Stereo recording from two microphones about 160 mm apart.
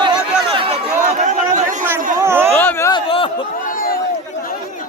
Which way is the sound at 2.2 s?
15° right (ahead or behind).